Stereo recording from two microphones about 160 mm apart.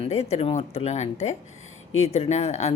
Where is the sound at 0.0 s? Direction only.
40° left (ahead or behind).